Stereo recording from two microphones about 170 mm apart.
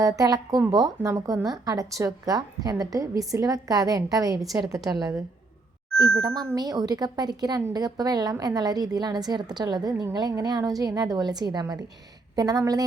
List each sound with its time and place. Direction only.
0.0 s a woman's voice: 20° right (ahead or behind)
4.4 s a woman's voice: centre (ahead or behind)
4.9 s a woman's voice: 20° right (ahead or behind)
6.5 s a woman's voice: 20° right (ahead or behind)